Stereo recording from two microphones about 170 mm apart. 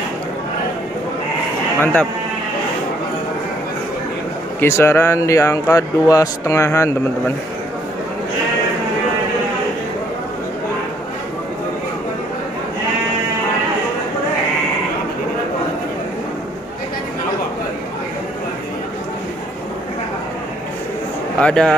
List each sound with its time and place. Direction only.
1.8 s speech: 10° left (ahead or behind)
4.6 s speech: 15° left (ahead or behind)
21.4 s speech: 5° left (ahead or behind)